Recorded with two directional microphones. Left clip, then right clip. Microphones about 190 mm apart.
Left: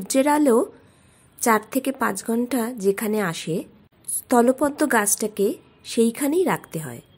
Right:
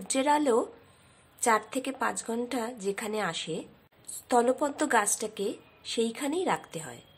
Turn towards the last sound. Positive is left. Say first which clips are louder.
# left 5 dB
turn(degrees=25)  # may be behind; listen again after turning